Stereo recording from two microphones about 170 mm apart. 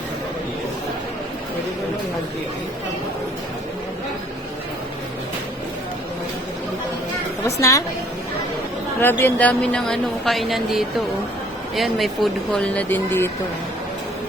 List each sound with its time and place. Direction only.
7.4 s a woman's voice: 20° left (ahead or behind)
9.0 s a woman's voice: 10° left (ahead or behind)